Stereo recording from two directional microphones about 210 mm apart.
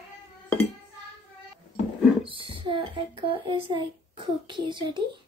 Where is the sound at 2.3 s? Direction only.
25° right (ahead or behind).